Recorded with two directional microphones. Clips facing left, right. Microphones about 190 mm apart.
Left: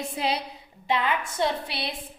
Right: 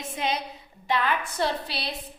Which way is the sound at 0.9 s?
20° left (ahead or behind).